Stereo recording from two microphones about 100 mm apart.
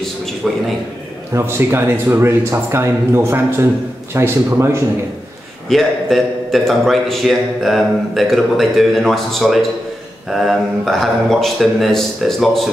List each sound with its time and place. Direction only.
1.3 s speech: 25° right (ahead or behind)
5.7 s a man's voice: centre (ahead or behind)